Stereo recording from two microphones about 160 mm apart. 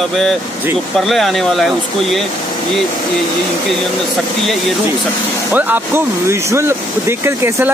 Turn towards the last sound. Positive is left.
turn(degrees=-15)  # may be behind; listen again after turning